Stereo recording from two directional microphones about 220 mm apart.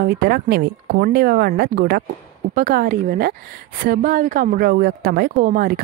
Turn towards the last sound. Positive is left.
turn(degrees=-40)  # may be behind; listen again after turning